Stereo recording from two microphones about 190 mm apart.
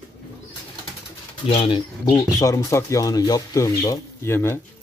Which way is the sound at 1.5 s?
30° left (ahead or behind).